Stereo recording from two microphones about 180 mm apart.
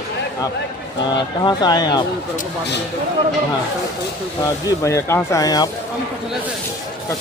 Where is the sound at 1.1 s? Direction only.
25° left (ahead or behind).